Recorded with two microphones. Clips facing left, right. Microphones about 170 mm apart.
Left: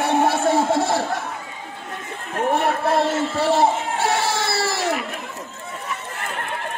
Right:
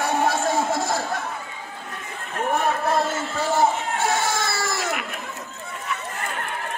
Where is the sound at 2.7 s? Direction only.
30° left (ahead or behind).